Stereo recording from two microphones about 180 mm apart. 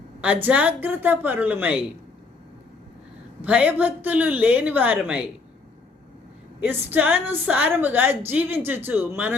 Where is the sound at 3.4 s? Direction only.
10° right (ahead or behind).